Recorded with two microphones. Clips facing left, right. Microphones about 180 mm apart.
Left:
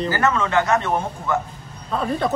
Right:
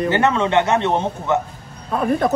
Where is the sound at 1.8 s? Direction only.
10° right (ahead or behind).